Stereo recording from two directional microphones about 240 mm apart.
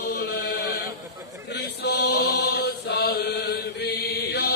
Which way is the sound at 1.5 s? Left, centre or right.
Left.